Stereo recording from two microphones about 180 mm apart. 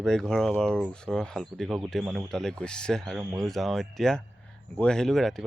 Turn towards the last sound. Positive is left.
turn(degrees=0)  # may be behind; listen again after turning